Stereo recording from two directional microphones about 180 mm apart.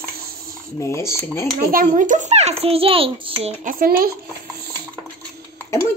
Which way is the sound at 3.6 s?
50° right (ahead or behind).